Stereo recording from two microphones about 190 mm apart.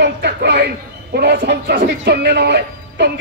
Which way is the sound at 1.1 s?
60° right (ahead or behind).